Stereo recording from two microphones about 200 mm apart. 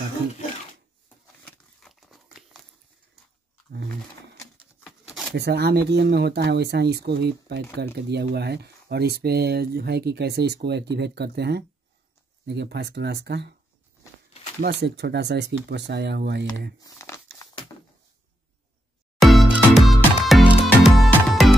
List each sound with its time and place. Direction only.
1.0 s crumpling: 5° left (ahead or behind)
5.3 s speech: 55° right (ahead or behind)
14.6 s speech: 55° right (ahead or behind)
16.8 s crumpling: 15° left (ahead or behind)
19.1 s music: centre (ahead or behind)